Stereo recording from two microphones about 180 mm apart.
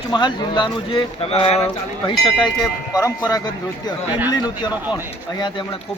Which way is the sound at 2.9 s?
20° left (ahead or behind).